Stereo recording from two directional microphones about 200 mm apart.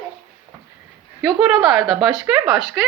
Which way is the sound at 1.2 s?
Centre (ahead or behind).